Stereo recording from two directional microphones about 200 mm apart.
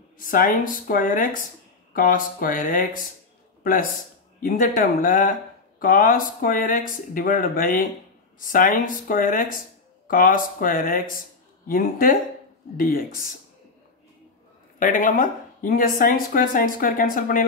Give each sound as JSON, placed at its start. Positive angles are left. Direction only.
{"t": 0.2, "sound": "speech", "side_deg": 45}
{"t": 4.4, "sound": "speech", "side_deg": 40}
{"t": 14.8, "sound": "speech", "side_deg": 40}